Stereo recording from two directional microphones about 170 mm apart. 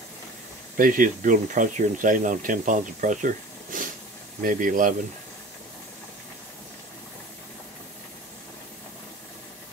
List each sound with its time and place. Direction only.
0.7 s speech: 55° right (ahead or behind)